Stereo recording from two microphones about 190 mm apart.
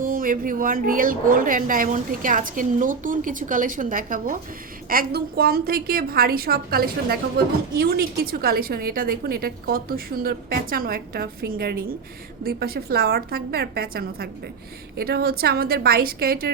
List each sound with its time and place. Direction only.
0.0 s a woman's voice: 45° right (ahead or behind)